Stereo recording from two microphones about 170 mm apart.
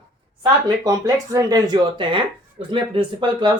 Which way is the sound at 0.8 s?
20° right (ahead or behind).